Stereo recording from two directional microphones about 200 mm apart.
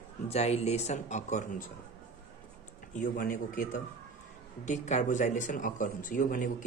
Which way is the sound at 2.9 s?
40° left (ahead or behind).